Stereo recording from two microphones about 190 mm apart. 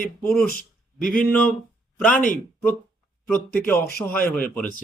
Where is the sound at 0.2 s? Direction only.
10° left (ahead or behind).